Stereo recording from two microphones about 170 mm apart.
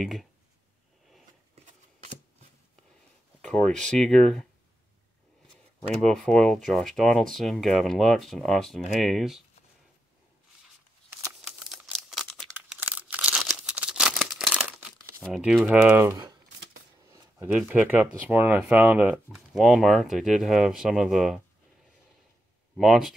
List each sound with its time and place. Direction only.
0.0 s speech: centre (ahead or behind)
1.5 s a sound: 40° right (ahead or behind)
3.4 s speech: 5° left (ahead or behind)
5.9 s speech: 5° left (ahead or behind)
11.1 s crumpling: 10° right (ahead or behind)
12.5 s crumpling: 10° right (ahead or behind)
15.2 s speech: centre (ahead or behind)
17.5 s speech: 5° right (ahead or behind)
22.8 s speech: centre (ahead or behind)